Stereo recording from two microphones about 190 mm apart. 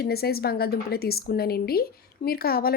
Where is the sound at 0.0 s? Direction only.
55° left (ahead or behind).